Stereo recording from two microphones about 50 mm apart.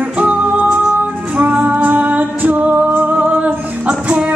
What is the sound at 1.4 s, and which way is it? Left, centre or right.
Music, right.